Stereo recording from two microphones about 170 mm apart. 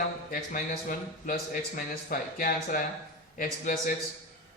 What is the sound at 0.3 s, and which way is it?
A man's voice, 55° left (ahead or behind).